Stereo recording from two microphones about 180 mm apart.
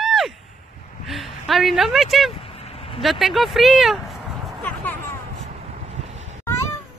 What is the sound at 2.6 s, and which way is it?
Vehicle, 35° left (ahead or behind).